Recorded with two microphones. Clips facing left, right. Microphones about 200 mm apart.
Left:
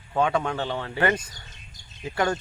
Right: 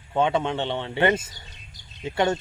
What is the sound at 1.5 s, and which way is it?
Bird, 45° left (ahead or behind).